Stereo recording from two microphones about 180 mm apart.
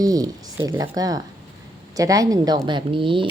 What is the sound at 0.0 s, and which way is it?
Speech, 20° right (ahead or behind).